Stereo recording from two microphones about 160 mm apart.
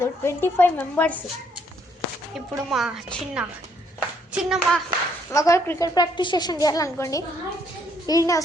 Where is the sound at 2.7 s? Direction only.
Centre (ahead or behind).